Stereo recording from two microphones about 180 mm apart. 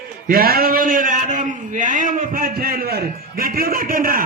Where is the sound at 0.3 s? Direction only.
55° right (ahead or behind).